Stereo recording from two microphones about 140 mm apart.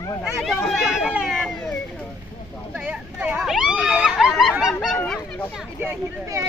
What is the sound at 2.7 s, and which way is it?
Speech, 10° right (ahead or behind).